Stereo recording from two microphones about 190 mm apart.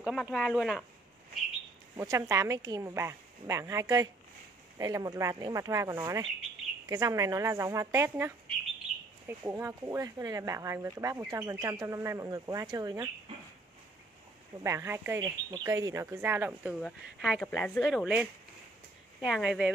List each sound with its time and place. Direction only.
0.0 s speech: centre (ahead or behind)
2.0 s speech: 15° right (ahead or behind)
9.4 s speech: 10° right (ahead or behind)
14.6 s speech: 15° right (ahead or behind)